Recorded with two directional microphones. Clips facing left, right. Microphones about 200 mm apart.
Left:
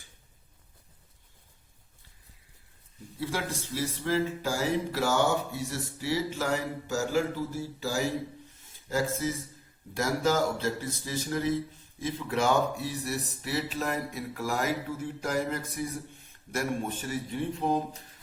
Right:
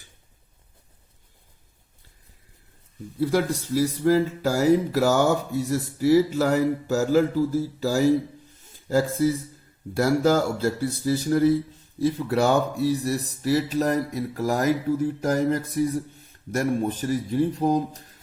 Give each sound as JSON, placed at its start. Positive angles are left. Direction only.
{"t": 3.3, "sound": "speech", "side_deg": -35}
{"t": 9.9, "sound": "speech", "side_deg": -35}